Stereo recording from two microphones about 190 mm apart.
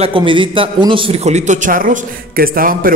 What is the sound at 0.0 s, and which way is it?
A man's voice, 25° right (ahead or behind).